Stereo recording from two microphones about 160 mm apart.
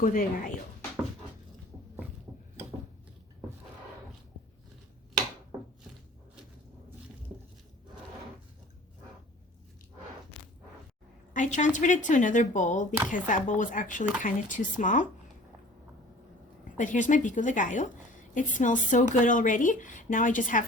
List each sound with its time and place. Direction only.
0.0 s speech: 60° left (ahead or behind)
11.3 s speech: 50° left (ahead or behind)
16.7 s speech: 50° left (ahead or behind)